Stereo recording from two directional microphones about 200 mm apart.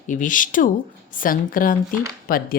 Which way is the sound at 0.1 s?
40° left (ahead or behind).